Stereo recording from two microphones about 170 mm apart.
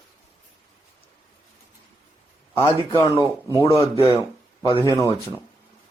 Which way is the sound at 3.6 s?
35° left (ahead or behind).